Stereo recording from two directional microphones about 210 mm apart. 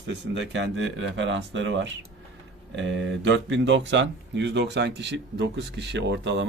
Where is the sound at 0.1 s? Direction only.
60° right (ahead or behind).